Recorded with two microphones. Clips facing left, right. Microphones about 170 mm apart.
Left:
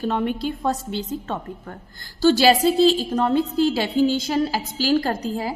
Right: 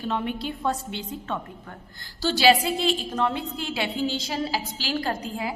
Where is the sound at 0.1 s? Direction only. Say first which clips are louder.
Left 1 dB; 45° left (ahead or behind).